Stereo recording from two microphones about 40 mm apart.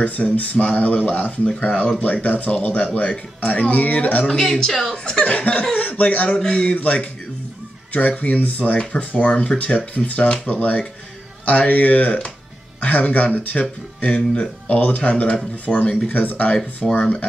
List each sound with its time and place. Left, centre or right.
0.0 s speech: left
4.4 s speech: centre
5.2 s speech: left
6.4 s speech: centre
6.7 s speech: left
16.8 s speech: centre